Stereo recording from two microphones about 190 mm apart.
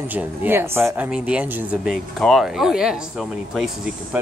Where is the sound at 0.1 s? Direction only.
10° right (ahead or behind).